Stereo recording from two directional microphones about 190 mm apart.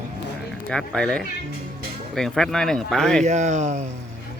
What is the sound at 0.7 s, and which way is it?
Speech, 5° left (ahead or behind).